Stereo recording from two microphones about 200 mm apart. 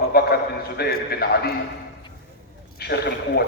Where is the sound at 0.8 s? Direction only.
50° left (ahead or behind).